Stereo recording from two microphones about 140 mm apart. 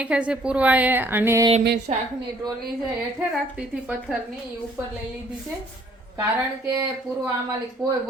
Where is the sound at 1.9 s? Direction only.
60° right (ahead or behind).